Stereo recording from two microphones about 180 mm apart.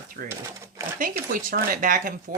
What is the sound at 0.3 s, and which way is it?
Drawer open or close, 15° right (ahead or behind).